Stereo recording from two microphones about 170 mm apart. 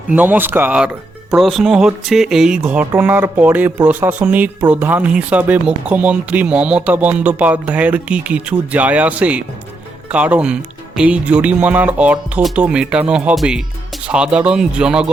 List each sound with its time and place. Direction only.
0.1 s speech: 10° right (ahead or behind)